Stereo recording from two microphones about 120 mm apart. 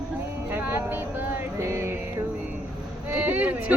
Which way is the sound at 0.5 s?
20° right (ahead or behind).